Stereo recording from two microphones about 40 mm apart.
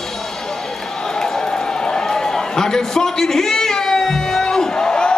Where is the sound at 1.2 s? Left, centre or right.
Centre.